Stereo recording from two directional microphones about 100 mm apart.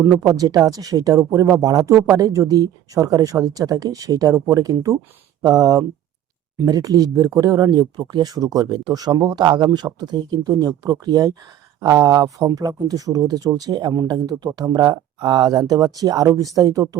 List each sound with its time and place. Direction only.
0.2 s speech: 35° right (ahead or behind)